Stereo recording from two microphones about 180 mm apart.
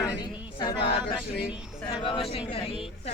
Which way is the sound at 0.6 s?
25° left (ahead or behind).